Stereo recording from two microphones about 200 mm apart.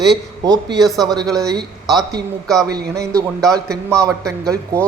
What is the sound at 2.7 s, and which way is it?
Speech, 15° right (ahead or behind).